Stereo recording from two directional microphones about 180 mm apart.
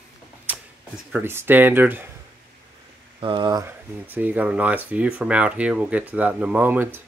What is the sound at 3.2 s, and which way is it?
Speech, 25° right (ahead or behind).